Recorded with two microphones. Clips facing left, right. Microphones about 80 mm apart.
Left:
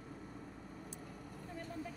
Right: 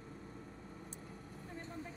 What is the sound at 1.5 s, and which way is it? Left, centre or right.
Vehicle, right.